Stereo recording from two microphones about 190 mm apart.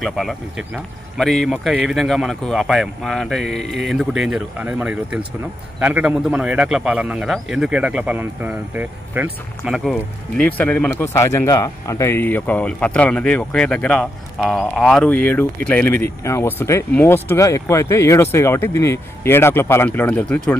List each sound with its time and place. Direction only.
0.0 s speech: centre (ahead or behind)
9.8 s speech: 10° left (ahead or behind)